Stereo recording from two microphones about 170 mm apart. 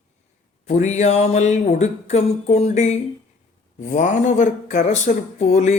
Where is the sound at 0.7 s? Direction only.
45° left (ahead or behind).